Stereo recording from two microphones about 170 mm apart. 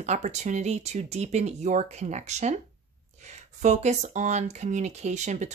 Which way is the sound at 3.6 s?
45° right (ahead or behind).